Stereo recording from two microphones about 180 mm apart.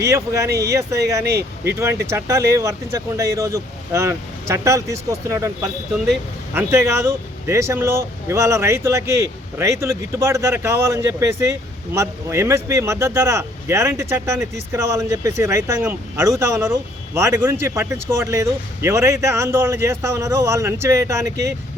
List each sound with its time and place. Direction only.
0.1 s speech: 15° right (ahead or behind)
1.2 s speech: 65° right (ahead or behind)
1.6 s speech: 15° right (ahead or behind)